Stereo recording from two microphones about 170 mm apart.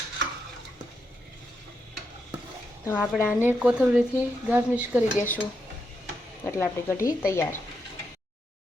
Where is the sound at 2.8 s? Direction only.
15° left (ahead or behind).